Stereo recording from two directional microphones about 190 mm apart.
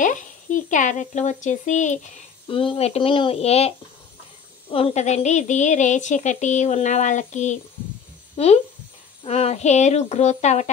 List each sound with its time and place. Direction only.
0.0 s speech: 40° left (ahead or behind)
2.4 s a woman's voice: 25° left (ahead or behind)